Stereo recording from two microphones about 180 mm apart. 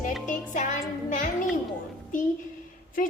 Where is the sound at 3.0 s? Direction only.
50° left (ahead or behind).